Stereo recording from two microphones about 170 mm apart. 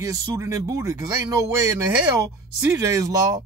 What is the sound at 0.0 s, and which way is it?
Speech, 20° right (ahead or behind).